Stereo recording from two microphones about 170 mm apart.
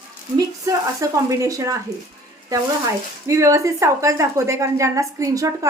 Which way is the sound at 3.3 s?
15° right (ahead or behind).